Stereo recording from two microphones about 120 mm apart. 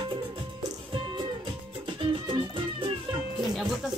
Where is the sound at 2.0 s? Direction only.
45° right (ahead or behind).